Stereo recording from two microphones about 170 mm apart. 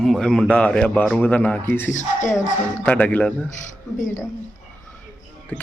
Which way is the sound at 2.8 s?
10° left (ahead or behind).